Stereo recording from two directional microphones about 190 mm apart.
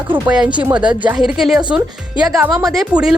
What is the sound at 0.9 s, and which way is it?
A woman's voice, 5° right (ahead or behind).